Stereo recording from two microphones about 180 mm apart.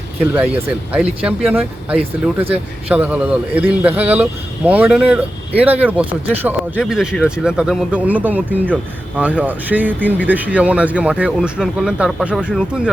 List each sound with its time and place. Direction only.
0.3 s speech: 5° right (ahead or behind)
2.0 s speech: 35° right (ahead or behind)
2.9 s speech: 5° right (ahead or behind)